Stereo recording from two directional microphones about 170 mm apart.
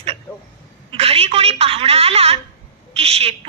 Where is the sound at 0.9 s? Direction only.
35° right (ahead or behind).